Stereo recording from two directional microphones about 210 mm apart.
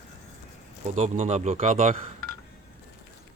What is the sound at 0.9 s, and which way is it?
Speech, 35° right (ahead or behind).